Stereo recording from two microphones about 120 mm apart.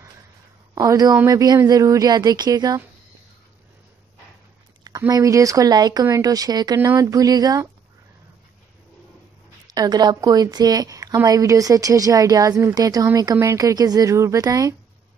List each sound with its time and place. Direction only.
0.7 s a woman's voice: 30° right (ahead or behind)
4.8 s a woman's voice: 30° right (ahead or behind)
9.7 s a woman's voice: 35° right (ahead or behind)